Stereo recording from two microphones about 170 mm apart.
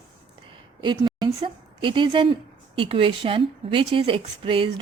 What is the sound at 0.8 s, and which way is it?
A woman's voice, 25° right (ahead or behind).